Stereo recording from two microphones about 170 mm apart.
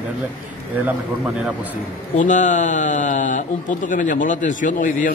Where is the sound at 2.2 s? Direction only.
50° left (ahead or behind).